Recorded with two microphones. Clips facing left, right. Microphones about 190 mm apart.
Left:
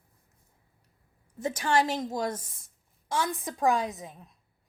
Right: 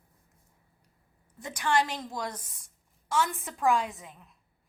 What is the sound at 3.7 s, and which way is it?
Speech, 20° left (ahead or behind).